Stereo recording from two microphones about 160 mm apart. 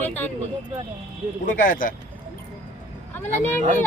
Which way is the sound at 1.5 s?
55° left (ahead or behind).